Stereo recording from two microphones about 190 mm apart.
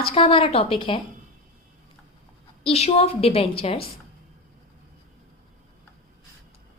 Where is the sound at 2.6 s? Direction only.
30° left (ahead or behind).